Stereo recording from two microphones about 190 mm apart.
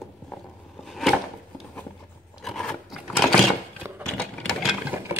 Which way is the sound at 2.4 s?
5° left (ahead or behind).